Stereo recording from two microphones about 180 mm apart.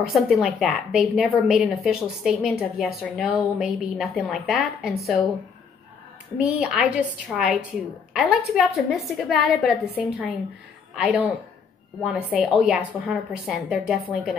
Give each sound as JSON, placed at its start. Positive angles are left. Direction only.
{"t": 0.1, "sound": "a woman's voice", "side_deg": 0}
{"t": 6.3, "sound": "a woman's voice", "side_deg": -5}